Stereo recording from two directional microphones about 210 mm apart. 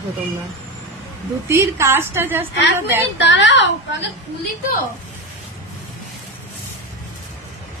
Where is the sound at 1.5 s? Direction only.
15° right (ahead or behind).